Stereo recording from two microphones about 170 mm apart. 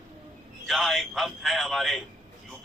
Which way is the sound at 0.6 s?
Centre (ahead or behind).